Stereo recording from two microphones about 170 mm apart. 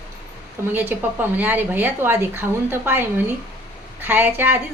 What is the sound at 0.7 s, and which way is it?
Speech, 10° right (ahead or behind).